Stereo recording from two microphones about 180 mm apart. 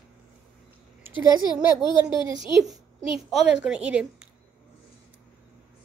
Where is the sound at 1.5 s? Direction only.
25° left (ahead or behind).